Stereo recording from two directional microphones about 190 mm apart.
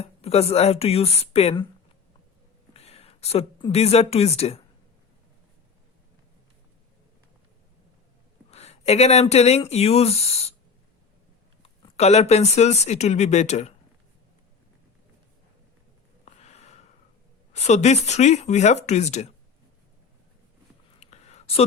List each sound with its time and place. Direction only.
0.0 s speech: 35° left (ahead or behind)
2.7 s a woman's voice: 30° left (ahead or behind)
8.4 s speech: 35° left (ahead or behind)
11.6 s speech: 35° left (ahead or behind)
16.2 s snort: 35° left (ahead or behind)
17.5 s speech: 35° left (ahead or behind)
21.0 s a sound: 35° left (ahead or behind)